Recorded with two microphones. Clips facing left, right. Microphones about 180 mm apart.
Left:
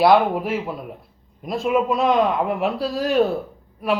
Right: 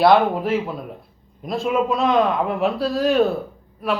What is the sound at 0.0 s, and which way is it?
A man's voice, 10° left (ahead or behind).